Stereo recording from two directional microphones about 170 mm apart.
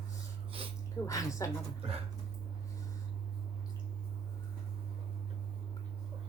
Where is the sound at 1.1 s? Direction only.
20° left (ahead or behind).